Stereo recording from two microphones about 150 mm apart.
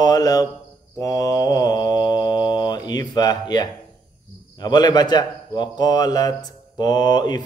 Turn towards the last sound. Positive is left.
turn(degrees=30)  # may be behind; listen again after turning